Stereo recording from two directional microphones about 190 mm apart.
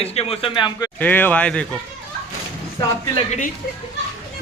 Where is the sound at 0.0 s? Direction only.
30° left (ahead or behind).